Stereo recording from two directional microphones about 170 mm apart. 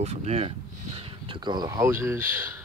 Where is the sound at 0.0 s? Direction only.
40° right (ahead or behind).